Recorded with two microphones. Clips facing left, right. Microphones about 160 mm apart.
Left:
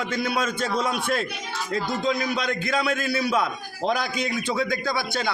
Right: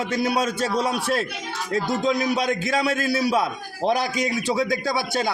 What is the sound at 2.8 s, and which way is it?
A man's voice, 40° right (ahead or behind).